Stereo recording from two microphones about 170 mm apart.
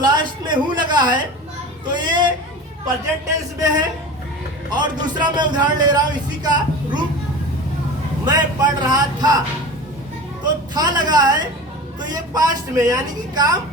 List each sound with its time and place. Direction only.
0.0 s a sound: 25° right (ahead or behind)
1.9 s speech: 25° right (ahead or behind)
8.2 s speech: 25° right (ahead or behind)
10.4 s speech: 25° right (ahead or behind)